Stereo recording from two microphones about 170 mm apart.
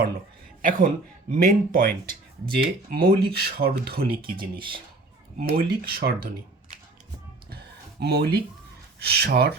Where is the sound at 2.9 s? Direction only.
65° right (ahead or behind).